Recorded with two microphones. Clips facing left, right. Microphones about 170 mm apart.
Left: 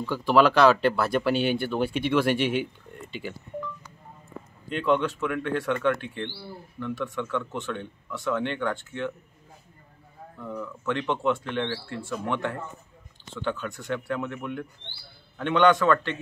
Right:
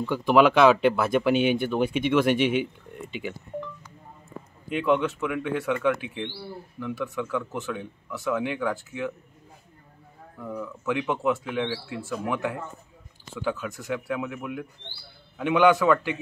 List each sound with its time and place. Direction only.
0.3 s speech: 5° right (ahead or behind)
4.6 s speech: 5° right (ahead or behind)
10.4 s speech: 10° right (ahead or behind)